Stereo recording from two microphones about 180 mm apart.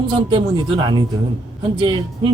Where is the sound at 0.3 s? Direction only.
30° right (ahead or behind).